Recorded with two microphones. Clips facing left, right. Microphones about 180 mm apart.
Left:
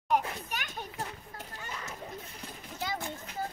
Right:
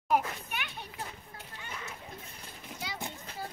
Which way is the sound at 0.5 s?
40° left (ahead or behind).